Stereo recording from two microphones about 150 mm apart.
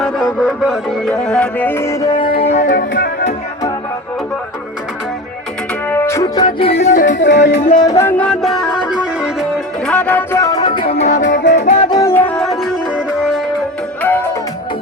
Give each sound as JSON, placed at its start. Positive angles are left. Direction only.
{"t": 0.0, "sound": "music", "side_deg": -5}
{"t": 1.2, "sound": "music", "side_deg": 5}
{"t": 2.4, "sound": "music", "side_deg": 50}
{"t": 5.9, "sound": "music", "side_deg": 15}
{"t": 6.4, "sound": "music", "side_deg": 40}
{"t": 7.8, "sound": "music", "side_deg": 20}
{"t": 11.9, "sound": "music", "side_deg": 20}
{"t": 14.0, "sound": "music", "side_deg": 15}